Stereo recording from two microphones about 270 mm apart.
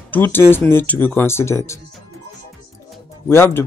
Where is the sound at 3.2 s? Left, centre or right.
Centre.